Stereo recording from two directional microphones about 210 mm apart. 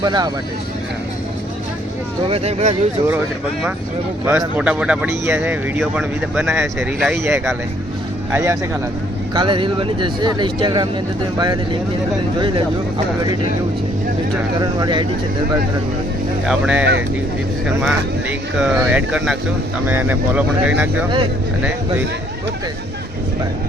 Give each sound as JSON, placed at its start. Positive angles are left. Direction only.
{"t": 0.0, "sound": "speech", "side_deg": -20}
{"t": 2.2, "sound": "speech", "side_deg": -30}
{"t": 4.3, "sound": "speech", "side_deg": -5}
{"t": 9.3, "sound": "speech", "side_deg": -20}
{"t": 14.6, "sound": "speech", "side_deg": -20}
{"t": 16.5, "sound": "speech", "side_deg": -5}
{"t": 17.8, "sound": "speech", "side_deg": -5}